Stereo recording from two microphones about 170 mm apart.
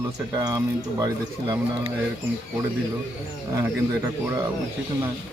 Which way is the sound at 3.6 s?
15° right (ahead or behind).